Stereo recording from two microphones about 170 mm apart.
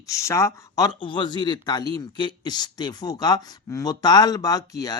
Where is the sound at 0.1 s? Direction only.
15° left (ahead or behind).